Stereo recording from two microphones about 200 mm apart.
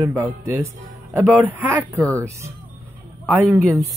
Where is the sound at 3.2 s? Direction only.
10° right (ahead or behind).